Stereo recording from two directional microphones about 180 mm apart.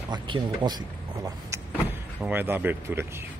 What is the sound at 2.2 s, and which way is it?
Speech, 10° right (ahead or behind).